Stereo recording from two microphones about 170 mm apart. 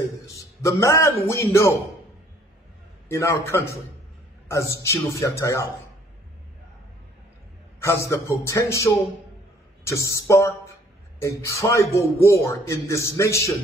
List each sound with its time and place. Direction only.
0.6 s a man's voice: 15° left (ahead or behind)
3.1 s a man's voice: 15° left (ahead or behind)
7.8 s a man's voice: 15° left (ahead or behind)